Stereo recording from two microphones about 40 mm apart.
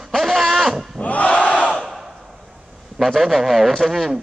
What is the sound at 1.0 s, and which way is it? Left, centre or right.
Battle cry, left.